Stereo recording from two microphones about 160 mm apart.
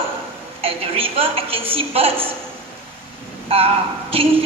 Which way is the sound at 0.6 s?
35° right (ahead or behind).